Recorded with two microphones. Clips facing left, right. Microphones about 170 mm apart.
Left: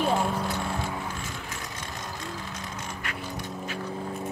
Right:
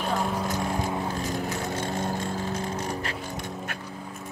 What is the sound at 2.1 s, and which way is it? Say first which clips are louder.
Music: right 7 dB; 40° right (ahead or behind).